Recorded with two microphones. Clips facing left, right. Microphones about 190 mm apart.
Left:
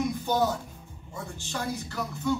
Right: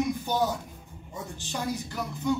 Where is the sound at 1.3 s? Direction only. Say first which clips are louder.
Right 1 dB; 15° right (ahead or behind).